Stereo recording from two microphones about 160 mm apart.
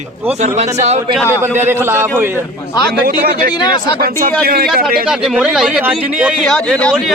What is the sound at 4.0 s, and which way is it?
Speech, 70° right (ahead or behind).